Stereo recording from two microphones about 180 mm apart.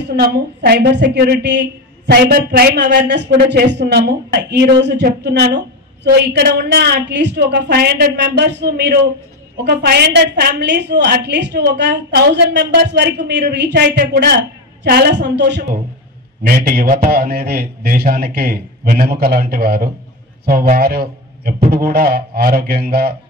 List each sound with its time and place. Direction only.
0.1 s a man's voice: 60° right (ahead or behind)
16.4 s a man's voice: 60° right (ahead or behind)